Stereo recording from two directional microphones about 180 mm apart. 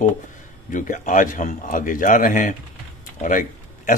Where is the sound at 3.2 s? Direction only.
45° left (ahead or behind).